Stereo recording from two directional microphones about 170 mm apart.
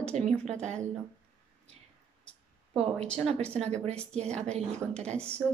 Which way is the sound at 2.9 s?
5° left (ahead or behind).